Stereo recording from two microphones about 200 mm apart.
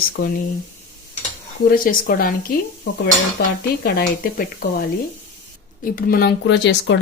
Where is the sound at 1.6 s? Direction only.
45° left (ahead or behind).